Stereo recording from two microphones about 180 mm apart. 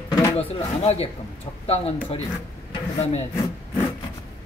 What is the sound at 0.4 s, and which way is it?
Speech, 35° left (ahead or behind).